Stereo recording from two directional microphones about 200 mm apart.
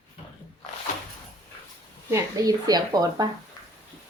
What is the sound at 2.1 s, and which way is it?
Speech, 15° right (ahead or behind).